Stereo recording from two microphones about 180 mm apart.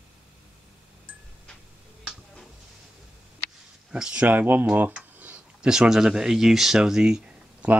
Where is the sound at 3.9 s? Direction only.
5° right (ahead or behind).